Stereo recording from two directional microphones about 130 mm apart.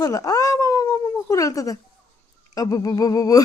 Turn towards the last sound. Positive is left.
turn(degrees=30)  # may be behind; listen again after turning